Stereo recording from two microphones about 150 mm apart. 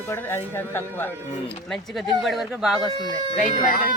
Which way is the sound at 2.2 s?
Centre (ahead or behind).